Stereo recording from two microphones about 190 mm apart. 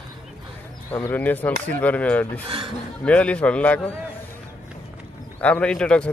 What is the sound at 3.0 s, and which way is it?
Speech, 5° left (ahead or behind).